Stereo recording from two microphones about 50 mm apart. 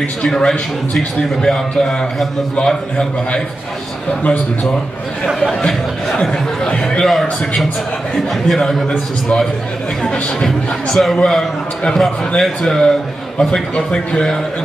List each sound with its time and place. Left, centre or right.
0.2 s a man's voice: centre
5.2 s a man's voice: centre
5.7 s a sound: centre
6.7 s a man's voice: centre
7.1 s a man's voice: centre
10.4 s a man's voice: centre